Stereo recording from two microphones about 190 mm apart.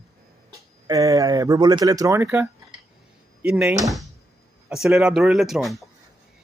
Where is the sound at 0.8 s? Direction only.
20° right (ahead or behind).